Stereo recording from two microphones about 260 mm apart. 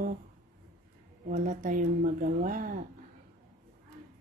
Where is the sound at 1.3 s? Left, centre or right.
Right.